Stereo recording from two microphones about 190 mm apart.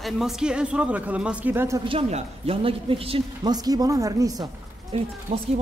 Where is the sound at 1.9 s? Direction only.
35° right (ahead or behind).